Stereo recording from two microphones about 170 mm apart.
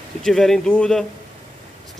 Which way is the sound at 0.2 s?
Centre (ahead or behind).